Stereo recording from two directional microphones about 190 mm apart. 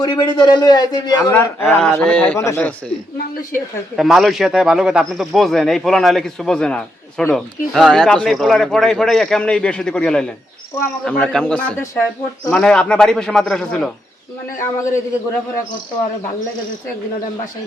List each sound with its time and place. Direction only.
0.0 s a man's voice: 20° left (ahead or behind)
1.3 s a man's voice: 5° left (ahead or behind)
3.9 s a man's voice: centre (ahead or behind)
14.6 s a man's voice: 15° left (ahead or behind)